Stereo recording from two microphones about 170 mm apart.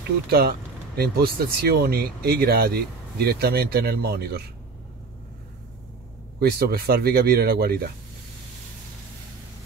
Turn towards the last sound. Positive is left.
turn(degrees=-65)  # may be behind; listen again after turning